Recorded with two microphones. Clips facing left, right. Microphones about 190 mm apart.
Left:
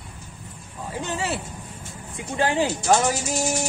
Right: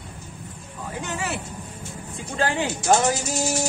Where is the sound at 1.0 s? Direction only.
25° left (ahead or behind).